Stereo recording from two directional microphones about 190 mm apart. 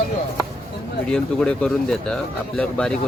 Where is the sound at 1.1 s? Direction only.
5° left (ahead or behind).